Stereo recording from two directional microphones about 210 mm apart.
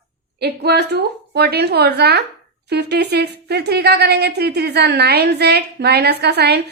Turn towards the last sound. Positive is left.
turn(degrees=-50)  # may be behind; listen again after turning